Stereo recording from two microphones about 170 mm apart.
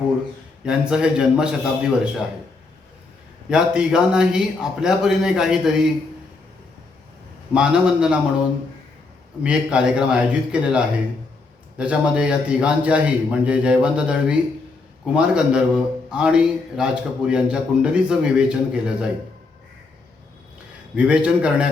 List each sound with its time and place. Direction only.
0.6 s a man's voice: 5° right (ahead or behind)
3.5 s a man's voice: 5° right (ahead or behind)
7.5 s a man's voice: 5° right (ahead or behind)
9.4 s a man's voice: 5° right (ahead or behind)
20.9 s a man's voice: 5° right (ahead or behind)